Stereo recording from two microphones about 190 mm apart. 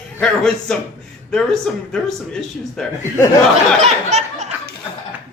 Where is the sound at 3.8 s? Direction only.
35° right (ahead or behind).